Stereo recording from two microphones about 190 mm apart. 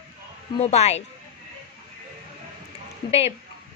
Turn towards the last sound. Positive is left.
turn(degrees=30)  # may be behind; listen again after turning